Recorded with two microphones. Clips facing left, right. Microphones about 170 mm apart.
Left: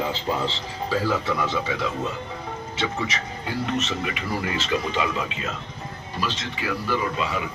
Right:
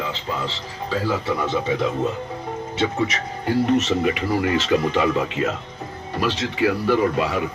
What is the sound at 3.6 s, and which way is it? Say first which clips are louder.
Speech: right 7 dB; 50° right (ahead or behind).